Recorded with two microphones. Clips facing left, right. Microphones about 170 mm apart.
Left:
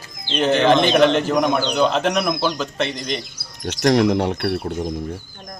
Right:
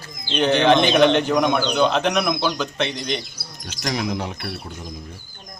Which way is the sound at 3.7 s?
70° left (ahead or behind).